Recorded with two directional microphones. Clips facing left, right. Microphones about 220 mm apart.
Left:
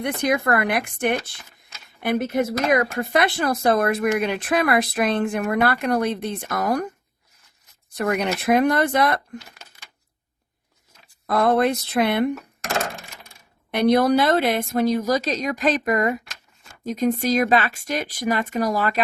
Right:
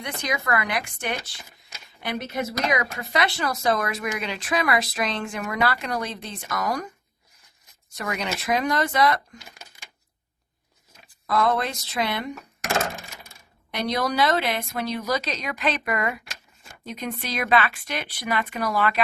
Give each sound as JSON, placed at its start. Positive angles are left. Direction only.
{"t": 0.0, "sound": "speech", "side_deg": 55}
{"t": 11.3, "sound": "speech", "side_deg": 55}
{"t": 12.6, "sound": "a sound", "side_deg": -5}
{"t": 13.7, "sound": "a woman's voice", "side_deg": 55}